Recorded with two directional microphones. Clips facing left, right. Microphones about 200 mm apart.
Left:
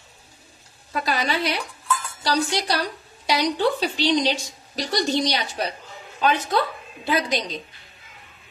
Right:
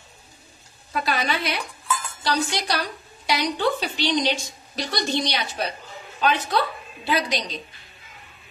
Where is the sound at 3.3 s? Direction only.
35° left (ahead or behind).